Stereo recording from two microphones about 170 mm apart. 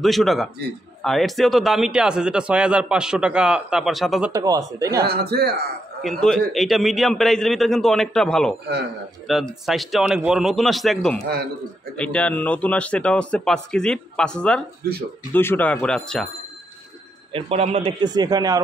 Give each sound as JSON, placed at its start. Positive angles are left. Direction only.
{"t": 0.0, "sound": "a man's voice", "side_deg": 0}
{"t": 4.3, "sound": "speech", "side_deg": -20}
{"t": 5.0, "sound": "a man's voice", "side_deg": -65}
{"t": 6.0, "sound": "a man's voice", "side_deg": 5}
{"t": 17.3, "sound": "a man's voice", "side_deg": -35}
{"t": 18.0, "sound": "speech", "side_deg": -25}